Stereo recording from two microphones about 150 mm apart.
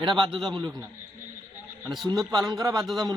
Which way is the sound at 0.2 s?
Centre (ahead or behind).